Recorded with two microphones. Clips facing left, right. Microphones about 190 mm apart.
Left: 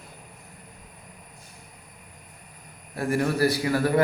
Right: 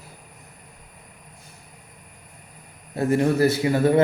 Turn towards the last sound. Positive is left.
turn(degrees=-20)  # may be behind; listen again after turning